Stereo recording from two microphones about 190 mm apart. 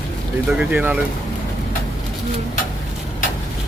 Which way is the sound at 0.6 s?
5° right (ahead or behind).